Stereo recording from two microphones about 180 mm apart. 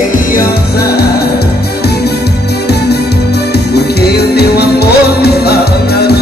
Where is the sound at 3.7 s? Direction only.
65° left (ahead or behind).